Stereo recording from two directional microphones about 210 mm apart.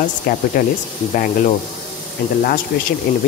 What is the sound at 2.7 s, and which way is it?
Speech, 50° left (ahead or behind).